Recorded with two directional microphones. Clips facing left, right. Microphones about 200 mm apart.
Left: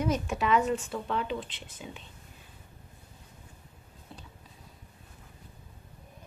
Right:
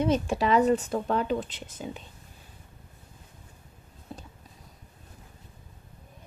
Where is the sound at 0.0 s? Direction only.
30° right (ahead or behind).